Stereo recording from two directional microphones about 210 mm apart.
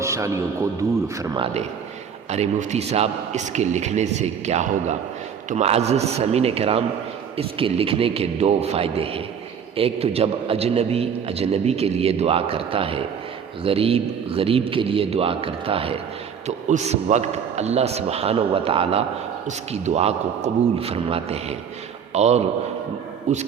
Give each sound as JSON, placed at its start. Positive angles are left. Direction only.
{"t": 0.0, "sound": "speech", "side_deg": -15}
{"t": 2.3, "sound": "a man's voice", "side_deg": -30}